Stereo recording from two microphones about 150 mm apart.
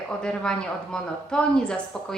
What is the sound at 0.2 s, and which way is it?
A woman's voice, 5° left (ahead or behind).